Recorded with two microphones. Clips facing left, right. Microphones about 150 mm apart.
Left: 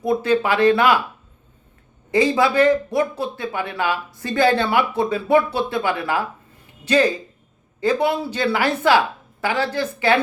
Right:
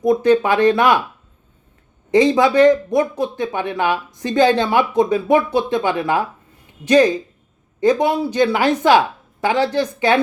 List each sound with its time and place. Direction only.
0.0 s speech: 15° right (ahead or behind)
2.0 s speech: 20° right (ahead or behind)